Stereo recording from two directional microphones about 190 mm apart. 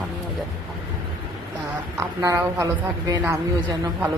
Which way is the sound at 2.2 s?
15° right (ahead or behind).